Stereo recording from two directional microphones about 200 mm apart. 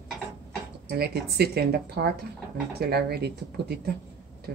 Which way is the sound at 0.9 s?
55° right (ahead or behind).